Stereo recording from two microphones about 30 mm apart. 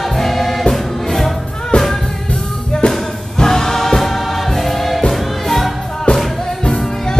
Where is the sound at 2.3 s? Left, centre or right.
Left.